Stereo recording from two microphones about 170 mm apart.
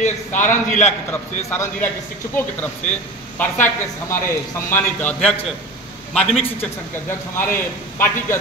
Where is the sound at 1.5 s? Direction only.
15° left (ahead or behind).